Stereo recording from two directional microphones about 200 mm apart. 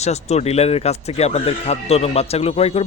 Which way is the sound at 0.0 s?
35° left (ahead or behind).